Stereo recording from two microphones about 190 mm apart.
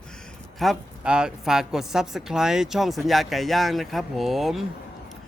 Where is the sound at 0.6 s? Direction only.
Centre (ahead or behind).